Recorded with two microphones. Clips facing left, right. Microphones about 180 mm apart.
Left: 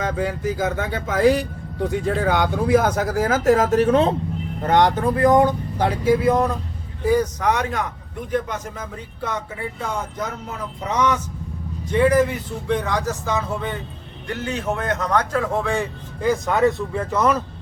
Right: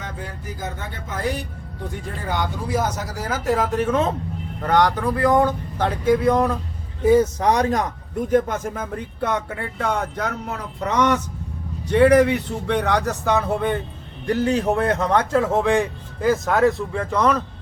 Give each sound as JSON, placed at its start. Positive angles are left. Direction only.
{"t": 0.0, "sound": "speech", "side_deg": 90}
{"t": 4.6, "sound": "speech", "side_deg": 20}
{"t": 7.0, "sound": "speech", "side_deg": -25}
{"t": 8.3, "sound": "speech", "side_deg": -50}
{"t": 14.3, "sound": "speech", "side_deg": -35}
{"t": 16.2, "sound": "speech", "side_deg": 0}